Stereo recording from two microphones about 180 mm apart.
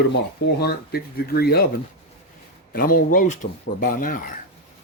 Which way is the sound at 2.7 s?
50° left (ahead or behind).